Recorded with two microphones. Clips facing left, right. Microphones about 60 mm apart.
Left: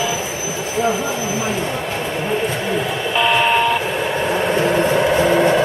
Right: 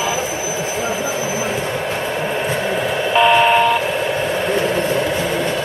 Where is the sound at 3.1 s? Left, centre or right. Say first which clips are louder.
Right 3 dB; centre.